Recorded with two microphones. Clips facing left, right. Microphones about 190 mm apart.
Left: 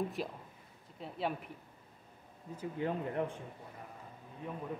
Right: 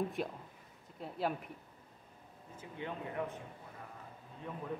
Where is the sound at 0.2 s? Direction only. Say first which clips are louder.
Right 1 dB; centre (ahead or behind).